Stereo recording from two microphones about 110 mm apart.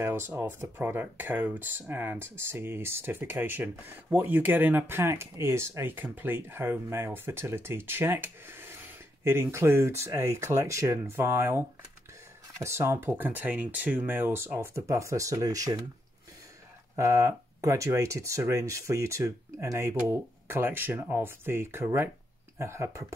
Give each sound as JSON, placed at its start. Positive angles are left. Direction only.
{"t": 0.0, "sound": "speech", "side_deg": -25}
{"t": 16.9, "sound": "speech", "side_deg": -30}